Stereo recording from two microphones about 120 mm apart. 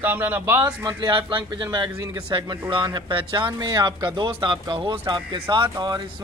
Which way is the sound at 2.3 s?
35° right (ahead or behind).